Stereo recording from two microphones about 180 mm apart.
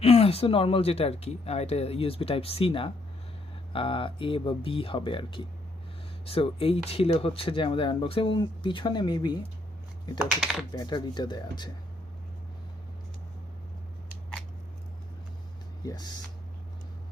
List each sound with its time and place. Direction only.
0.0 s speech: 35° left (ahead or behind)
10.2 s speech: 5° right (ahead or behind)
10.7 s speech: 25° left (ahead or behind)
15.8 s speech: 20° left (ahead or behind)